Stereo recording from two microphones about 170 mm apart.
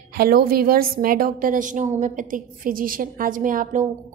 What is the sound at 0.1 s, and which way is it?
A woman's voice, 60° right (ahead or behind).